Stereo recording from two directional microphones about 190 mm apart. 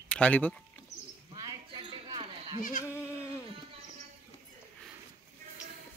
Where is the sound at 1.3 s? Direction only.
20° right (ahead or behind).